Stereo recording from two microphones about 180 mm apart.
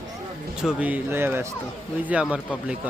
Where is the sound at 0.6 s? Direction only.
5° right (ahead or behind).